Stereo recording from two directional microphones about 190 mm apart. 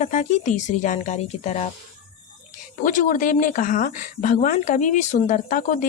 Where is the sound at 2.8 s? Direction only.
45° left (ahead or behind).